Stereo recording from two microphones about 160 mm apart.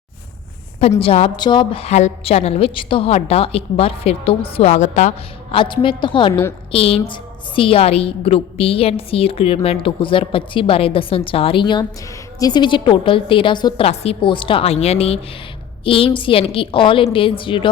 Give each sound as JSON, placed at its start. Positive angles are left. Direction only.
{"t": 0.8, "sound": "a woman's voice", "side_deg": 35}
{"t": 5.5, "sound": "a woman's voice", "side_deg": 30}